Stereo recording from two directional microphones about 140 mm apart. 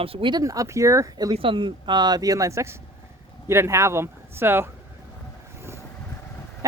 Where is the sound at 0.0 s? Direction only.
40° right (ahead or behind); by 1.4 s 25° right (ahead or behind).